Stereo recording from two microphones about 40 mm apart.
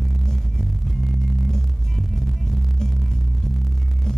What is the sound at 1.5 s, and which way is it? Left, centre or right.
Music, centre.